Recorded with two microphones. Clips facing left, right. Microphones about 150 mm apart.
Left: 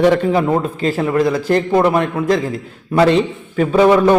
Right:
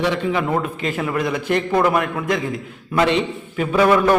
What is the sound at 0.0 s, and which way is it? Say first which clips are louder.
Speech: left 7 dB; 40° left (ahead or behind).